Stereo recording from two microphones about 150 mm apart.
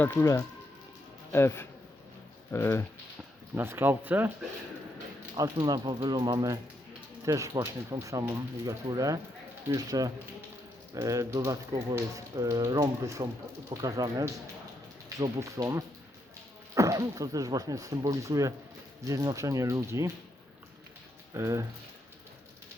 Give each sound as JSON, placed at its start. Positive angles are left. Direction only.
{"t": 0.0, "sound": "speech", "side_deg": 15}
{"t": 3.5, "sound": "speech", "side_deg": -15}
{"t": 5.4, "sound": "speech", "side_deg": -25}
{"t": 21.3, "sound": "speech", "side_deg": -20}